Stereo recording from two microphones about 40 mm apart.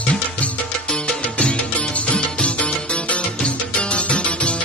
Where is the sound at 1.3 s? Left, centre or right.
Left.